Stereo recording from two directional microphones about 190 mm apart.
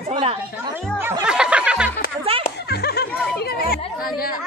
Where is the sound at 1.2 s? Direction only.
5° right (ahead or behind).